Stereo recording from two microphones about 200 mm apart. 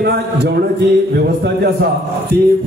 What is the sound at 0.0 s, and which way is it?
A man's voice, 55° right (ahead or behind).